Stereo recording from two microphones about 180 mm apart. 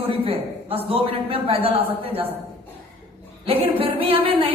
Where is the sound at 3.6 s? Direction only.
30° right (ahead or behind).